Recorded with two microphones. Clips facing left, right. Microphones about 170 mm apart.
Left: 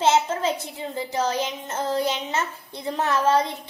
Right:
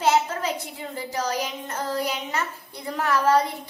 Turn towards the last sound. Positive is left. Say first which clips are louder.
# even
turn(degrees=25)  # may be behind; listen again after turning